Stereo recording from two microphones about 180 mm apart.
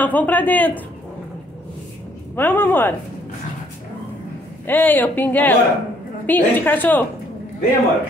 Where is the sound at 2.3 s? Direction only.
10° left (ahead or behind).